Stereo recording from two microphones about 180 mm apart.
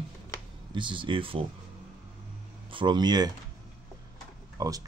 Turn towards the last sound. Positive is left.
turn(degrees=-20)  # may be behind; listen again after turning